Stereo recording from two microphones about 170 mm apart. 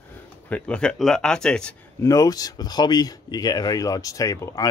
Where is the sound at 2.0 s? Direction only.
20° left (ahead or behind).